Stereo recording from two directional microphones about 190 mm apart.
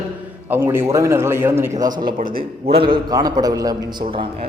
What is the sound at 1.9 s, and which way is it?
Speech, 45° right (ahead or behind).